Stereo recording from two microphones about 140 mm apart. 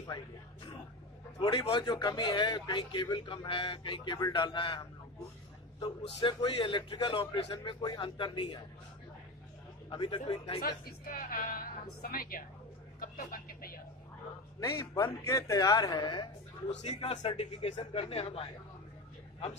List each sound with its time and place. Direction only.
1.4 s a man's voice: 35° left (ahead or behind)
9.8 s a man's voice: 35° left (ahead or behind)
10.9 s a woman's voice: 90° left
14.6 s speech: 25° left (ahead or behind)
16.8 s speech: 55° left (ahead or behind)